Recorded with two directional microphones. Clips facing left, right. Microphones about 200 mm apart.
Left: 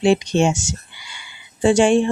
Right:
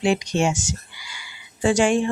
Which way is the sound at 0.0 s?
30° left (ahead or behind).